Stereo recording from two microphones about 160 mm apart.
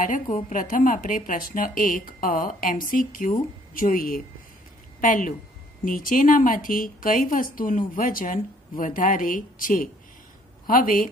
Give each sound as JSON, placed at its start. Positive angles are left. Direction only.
{"t": 0.0, "sound": "a woman's voice", "side_deg": 55}